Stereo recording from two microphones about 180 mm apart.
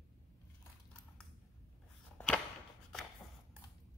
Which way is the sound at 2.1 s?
10° left (ahead or behind).